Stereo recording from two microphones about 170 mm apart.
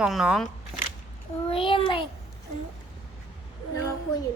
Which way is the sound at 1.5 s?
30° left (ahead or behind).